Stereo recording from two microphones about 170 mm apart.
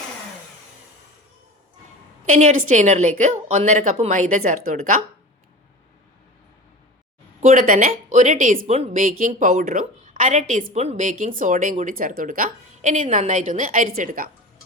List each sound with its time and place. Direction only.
2.2 s a woman's voice: 45° right (ahead or behind)
7.4 s a woman's voice: 50° right (ahead or behind)
8.9 s a woman's voice: 50° right (ahead or behind)